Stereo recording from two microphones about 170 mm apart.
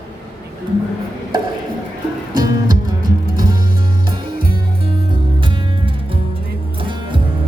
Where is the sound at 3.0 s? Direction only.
55° right (ahead or behind).